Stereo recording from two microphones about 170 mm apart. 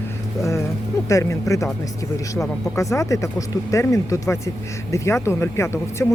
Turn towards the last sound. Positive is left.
turn(degrees=15)  # may be behind; listen again after turning